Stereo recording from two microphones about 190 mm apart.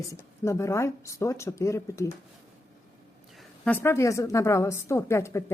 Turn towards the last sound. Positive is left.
turn(degrees=15)  # may be behind; listen again after turning